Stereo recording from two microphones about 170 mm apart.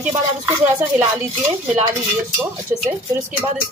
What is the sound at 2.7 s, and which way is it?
Speech, 10° right (ahead or behind).